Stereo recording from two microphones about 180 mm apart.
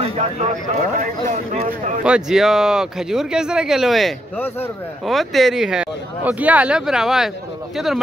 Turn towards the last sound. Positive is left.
turn(degrees=0)  # may be behind; listen again after turning